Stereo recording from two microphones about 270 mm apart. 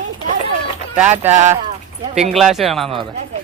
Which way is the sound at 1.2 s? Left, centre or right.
Centre.